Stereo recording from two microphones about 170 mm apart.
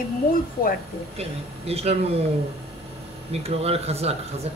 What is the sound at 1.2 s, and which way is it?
Speech, 35° right (ahead or behind).